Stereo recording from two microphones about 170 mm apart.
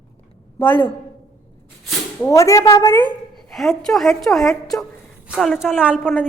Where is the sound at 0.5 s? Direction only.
10° left (ahead or behind).